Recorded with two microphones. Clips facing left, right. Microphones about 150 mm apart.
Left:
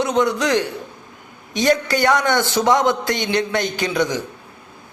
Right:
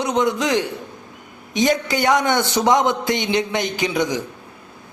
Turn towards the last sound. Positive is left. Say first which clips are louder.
# even
turn(degrees=-20)  # may be behind; listen again after turning